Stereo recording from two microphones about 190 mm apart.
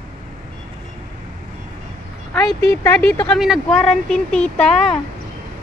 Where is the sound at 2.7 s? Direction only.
10° left (ahead or behind).